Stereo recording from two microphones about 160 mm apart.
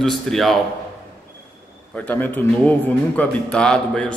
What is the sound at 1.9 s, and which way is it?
A man's voice, 10° left (ahead or behind).